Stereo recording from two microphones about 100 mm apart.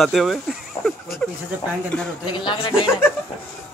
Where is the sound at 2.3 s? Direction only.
50° left (ahead or behind).